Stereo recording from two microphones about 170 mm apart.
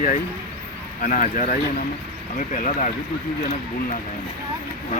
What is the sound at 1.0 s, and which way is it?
Speech, 50° left (ahead or behind).